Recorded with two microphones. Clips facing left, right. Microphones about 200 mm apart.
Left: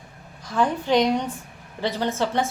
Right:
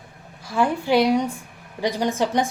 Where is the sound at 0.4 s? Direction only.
10° right (ahead or behind).